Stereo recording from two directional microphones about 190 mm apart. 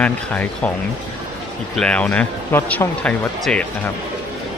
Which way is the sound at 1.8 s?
5° left (ahead or behind).